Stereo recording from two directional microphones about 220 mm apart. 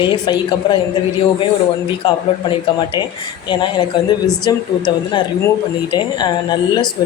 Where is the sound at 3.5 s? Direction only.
20° left (ahead or behind).